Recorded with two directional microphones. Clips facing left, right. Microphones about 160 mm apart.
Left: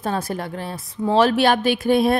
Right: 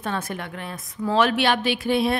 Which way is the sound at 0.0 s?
35° left (ahead or behind).